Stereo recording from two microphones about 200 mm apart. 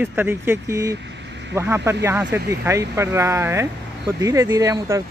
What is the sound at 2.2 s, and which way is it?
Speech, 55° right (ahead or behind).